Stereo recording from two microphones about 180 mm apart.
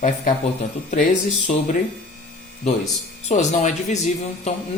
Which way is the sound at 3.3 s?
40° left (ahead or behind).